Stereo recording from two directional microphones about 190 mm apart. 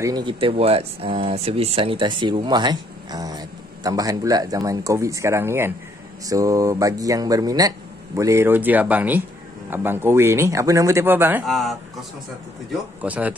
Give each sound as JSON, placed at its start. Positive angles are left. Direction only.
{"t": 0.0, "sound": "speech", "side_deg": -20}
{"t": 11.4, "sound": "a man's voice", "side_deg": 0}
{"t": 13.0, "sound": "speech", "side_deg": -10}